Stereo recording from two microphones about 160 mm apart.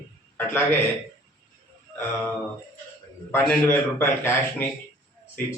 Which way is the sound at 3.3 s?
15° left (ahead or behind).